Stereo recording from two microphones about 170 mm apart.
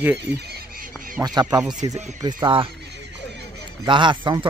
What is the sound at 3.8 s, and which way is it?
Speech, 30° right (ahead or behind).